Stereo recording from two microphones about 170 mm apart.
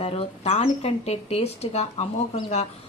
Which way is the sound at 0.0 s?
35° left (ahead or behind).